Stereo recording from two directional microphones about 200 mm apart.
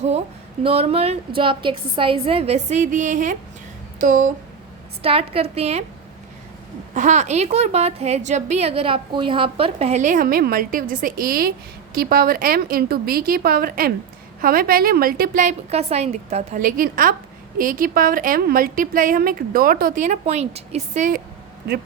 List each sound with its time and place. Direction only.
0.6 s a woman's voice: 30° right (ahead or behind)
5.0 s a woman's voice: 30° right (ahead or behind)
6.9 s a woman's voice: 35° right (ahead or behind)